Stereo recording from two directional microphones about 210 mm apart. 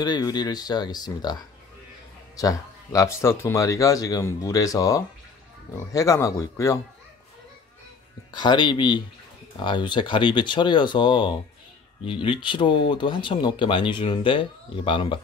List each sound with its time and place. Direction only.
0.0 s speech: 20° left (ahead or behind)
8.3 s speech: 20° left (ahead or behind)